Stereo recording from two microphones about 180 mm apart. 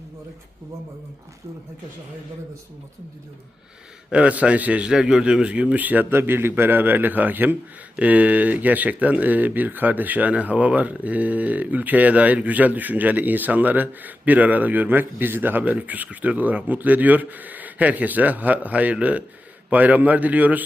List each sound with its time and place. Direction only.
4.1 s speech: 5° right (ahead or behind)